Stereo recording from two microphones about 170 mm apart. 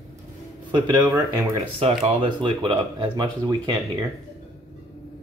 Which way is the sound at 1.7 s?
35° right (ahead or behind).